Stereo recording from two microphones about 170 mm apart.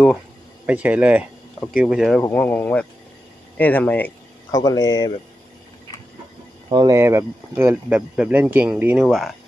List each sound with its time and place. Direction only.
0.7 s speech: 10° right (ahead or behind)
2.2 s speech: 10° left (ahead or behind)
4.5 s speech: 20° left (ahead or behind)
6.7 s speech: 25° right (ahead or behind)
7.0 s speech: 15° right (ahead or behind)